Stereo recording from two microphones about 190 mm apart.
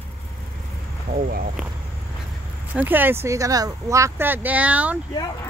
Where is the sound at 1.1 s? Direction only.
50° right (ahead or behind).